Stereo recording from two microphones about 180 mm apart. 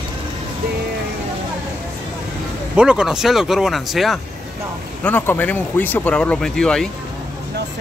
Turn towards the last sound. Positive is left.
turn(degrees=5)  # may be behind; listen again after turning